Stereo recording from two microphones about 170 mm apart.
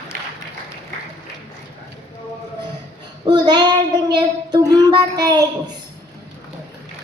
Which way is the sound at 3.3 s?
25° right (ahead or behind).